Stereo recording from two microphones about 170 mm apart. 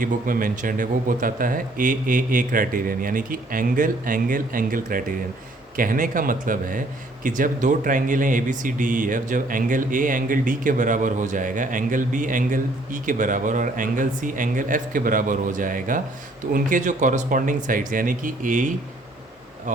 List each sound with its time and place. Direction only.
0.0 s speech: 55° right (ahead or behind)